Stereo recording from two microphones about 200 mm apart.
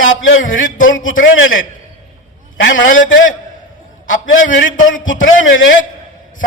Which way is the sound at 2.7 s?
40° left (ahead or behind).